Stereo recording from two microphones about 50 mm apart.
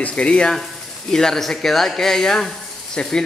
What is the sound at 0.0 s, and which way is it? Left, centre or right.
Speech, left.